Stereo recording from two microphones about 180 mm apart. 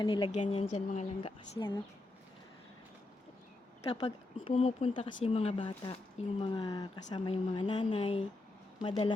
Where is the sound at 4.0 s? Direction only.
25° left (ahead or behind).